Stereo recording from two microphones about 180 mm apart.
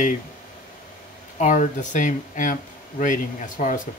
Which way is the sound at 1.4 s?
45° left (ahead or behind).